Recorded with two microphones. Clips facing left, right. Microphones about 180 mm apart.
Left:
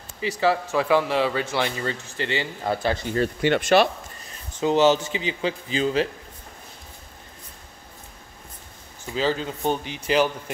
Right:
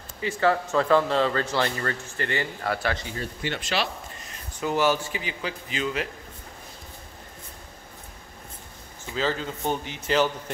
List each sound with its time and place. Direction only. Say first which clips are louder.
0.4 s a man's voice: even; 10° left (ahead or behind); by 3.0 s 25° left (ahead or behind)
3.1 s speech: left 10 dB; 65° left (ahead or behind)
4.6 s a man's voice: left 5 dB; 20° left (ahead or behind)
9.1 s a man's voice: left 3 dB; 20° left (ahead or behind)